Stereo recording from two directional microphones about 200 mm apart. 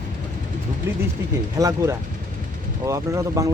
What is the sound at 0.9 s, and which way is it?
Speech, 10° right (ahead or behind).